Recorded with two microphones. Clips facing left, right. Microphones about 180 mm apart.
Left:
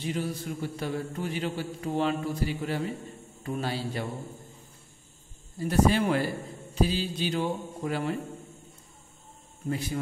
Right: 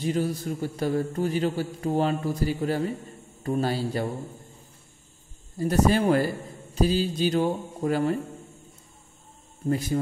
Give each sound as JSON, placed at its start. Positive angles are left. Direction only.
{"t": 0.0, "sound": "a man's voice", "side_deg": -40}
{"t": 5.6, "sound": "speech", "side_deg": -45}
{"t": 9.7, "sound": "speech", "side_deg": -40}